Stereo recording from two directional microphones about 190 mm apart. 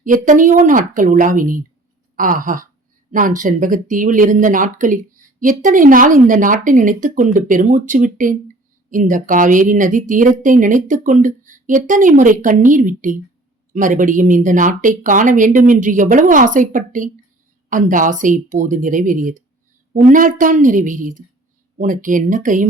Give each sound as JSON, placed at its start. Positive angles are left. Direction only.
{"t": 0.0, "sound": "speech", "side_deg": -45}